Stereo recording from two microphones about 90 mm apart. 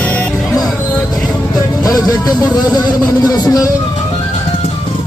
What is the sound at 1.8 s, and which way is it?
Speech, 45° left (ahead or behind).